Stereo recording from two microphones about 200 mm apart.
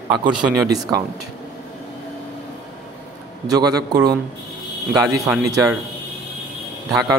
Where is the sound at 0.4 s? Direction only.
10° right (ahead or behind).